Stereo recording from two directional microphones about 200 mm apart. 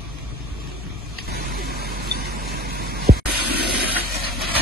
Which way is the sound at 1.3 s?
50° right (ahead or behind).